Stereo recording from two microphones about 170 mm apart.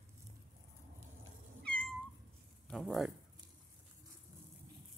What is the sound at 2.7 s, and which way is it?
Speech, centre (ahead or behind).